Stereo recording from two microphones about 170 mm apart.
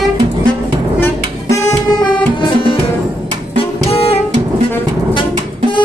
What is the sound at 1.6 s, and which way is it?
Music, 25° left (ahead or behind).